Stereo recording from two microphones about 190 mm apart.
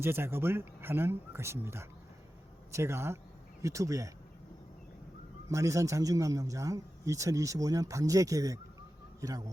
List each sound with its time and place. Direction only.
0.0 s a man's voice: 10° right (ahead or behind)
5.5 s a man's voice: 15° right (ahead or behind)